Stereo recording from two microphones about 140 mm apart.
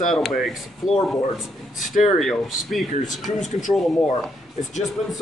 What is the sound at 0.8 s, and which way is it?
Speech, 25° left (ahead or behind).